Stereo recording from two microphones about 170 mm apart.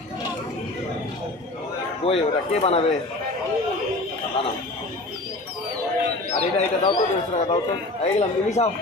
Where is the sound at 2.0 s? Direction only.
40° left (ahead or behind).